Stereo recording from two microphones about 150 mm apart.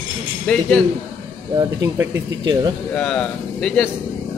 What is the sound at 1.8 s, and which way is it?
Speech, 15° right (ahead or behind).